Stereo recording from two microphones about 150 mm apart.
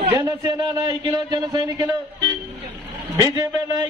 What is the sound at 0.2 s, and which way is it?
A man's voice, 25° right (ahead or behind).